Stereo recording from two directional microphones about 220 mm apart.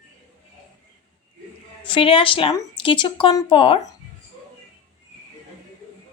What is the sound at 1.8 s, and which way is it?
Speech, 25° left (ahead or behind).